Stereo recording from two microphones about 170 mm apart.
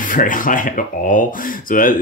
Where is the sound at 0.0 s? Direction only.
50° left (ahead or behind).